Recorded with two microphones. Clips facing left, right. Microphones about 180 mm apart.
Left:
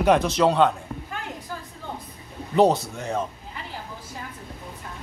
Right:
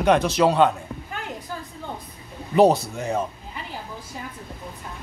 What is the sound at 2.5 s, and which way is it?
Speech, 10° right (ahead or behind).